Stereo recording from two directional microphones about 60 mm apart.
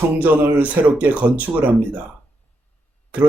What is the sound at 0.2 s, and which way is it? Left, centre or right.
A man's voice, right.